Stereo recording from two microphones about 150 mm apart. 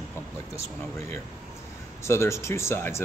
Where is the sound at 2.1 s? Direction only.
20° left (ahead or behind).